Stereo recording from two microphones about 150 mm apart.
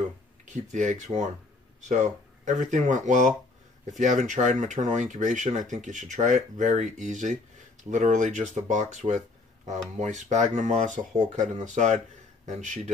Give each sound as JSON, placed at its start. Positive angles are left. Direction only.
{"t": 0.5, "sound": "speech", "side_deg": -50}